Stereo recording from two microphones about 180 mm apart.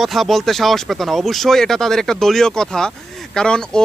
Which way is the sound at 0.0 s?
Centre (ahead or behind).